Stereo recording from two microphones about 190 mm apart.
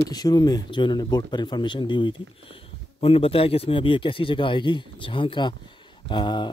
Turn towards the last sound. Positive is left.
turn(degrees=25)  # may be behind; listen again after turning